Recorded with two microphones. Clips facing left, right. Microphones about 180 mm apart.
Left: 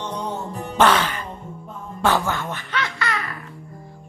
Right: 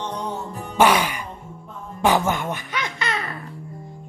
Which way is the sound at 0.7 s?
10° right (ahead or behind).